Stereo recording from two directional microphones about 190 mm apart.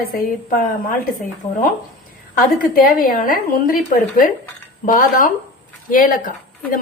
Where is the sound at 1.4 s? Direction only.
15° left (ahead or behind).